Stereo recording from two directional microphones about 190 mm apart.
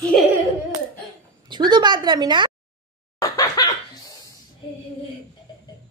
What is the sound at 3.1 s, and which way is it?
Laughter, 20° left (ahead or behind).